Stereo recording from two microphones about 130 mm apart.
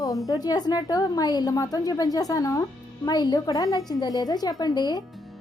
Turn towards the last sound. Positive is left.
turn(degrees=30)  # may be behind; listen again after turning